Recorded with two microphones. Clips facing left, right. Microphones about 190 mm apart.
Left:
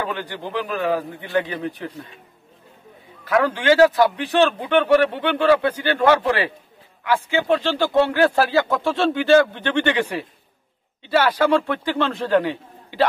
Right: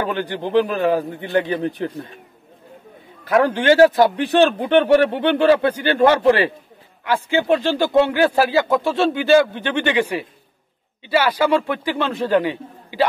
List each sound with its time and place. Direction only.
0.1 s a man's voice: 25° right (ahead or behind)
3.3 s a man's voice: 30° right (ahead or behind)
7.4 s speech: 15° right (ahead or behind)